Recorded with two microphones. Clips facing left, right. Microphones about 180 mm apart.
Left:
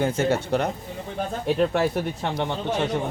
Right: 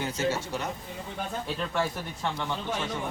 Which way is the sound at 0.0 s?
55° left (ahead or behind).